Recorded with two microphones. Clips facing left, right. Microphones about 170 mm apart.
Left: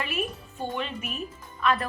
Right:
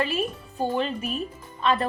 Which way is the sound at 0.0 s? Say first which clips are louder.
Right 5 dB; 30° right (ahead or behind).